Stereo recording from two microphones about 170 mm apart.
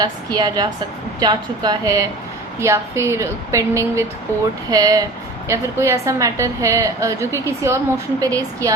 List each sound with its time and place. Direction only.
0.0 s a woman's voice: 25° right (ahead or behind)